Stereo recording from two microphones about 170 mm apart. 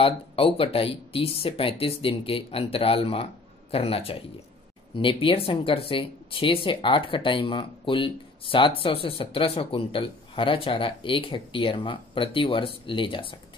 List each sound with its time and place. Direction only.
0.0 s speech: 35° left (ahead or behind)